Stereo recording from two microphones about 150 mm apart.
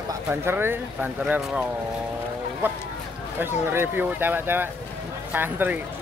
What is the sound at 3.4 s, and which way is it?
Speech, 15° right (ahead or behind).